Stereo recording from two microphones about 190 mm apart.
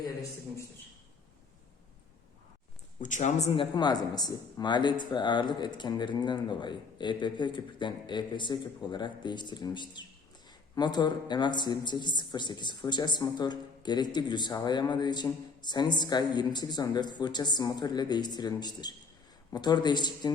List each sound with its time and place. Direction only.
3.0 s speech: 40° left (ahead or behind); by 20.3 s 20° left (ahead or behind)